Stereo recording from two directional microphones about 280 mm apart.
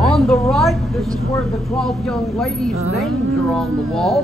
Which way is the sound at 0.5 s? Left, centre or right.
Centre.